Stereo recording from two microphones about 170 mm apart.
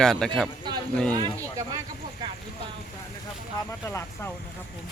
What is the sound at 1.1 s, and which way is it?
Speech, 25° right (ahead or behind).